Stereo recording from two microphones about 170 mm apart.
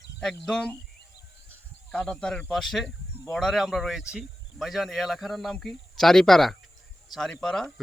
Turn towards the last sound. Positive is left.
turn(degrees=5)  # may be behind; listen again after turning